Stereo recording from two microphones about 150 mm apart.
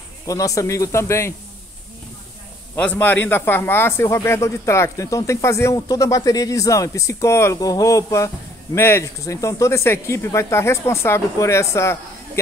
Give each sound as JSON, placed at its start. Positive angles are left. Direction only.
{"t": 0.3, "sound": "a man's voice", "side_deg": 20}
{"t": 2.7, "sound": "a man's voice", "side_deg": 10}